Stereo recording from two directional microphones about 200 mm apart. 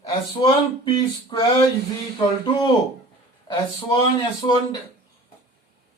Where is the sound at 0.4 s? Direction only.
25° left (ahead or behind).